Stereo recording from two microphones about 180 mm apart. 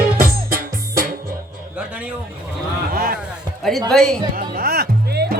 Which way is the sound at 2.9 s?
55° right (ahead or behind).